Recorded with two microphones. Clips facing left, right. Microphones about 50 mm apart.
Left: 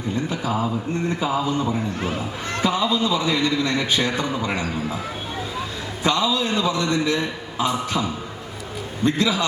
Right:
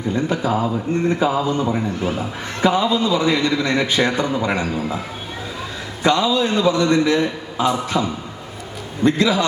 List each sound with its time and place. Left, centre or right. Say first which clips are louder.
0.3 s a man's voice: right 4 dB; right
6.0 s a man's voice: right 4 dB; right
9.0 s a man's voice: right 4 dB; right